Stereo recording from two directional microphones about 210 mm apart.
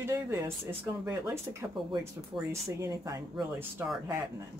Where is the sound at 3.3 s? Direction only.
Centre (ahead or behind).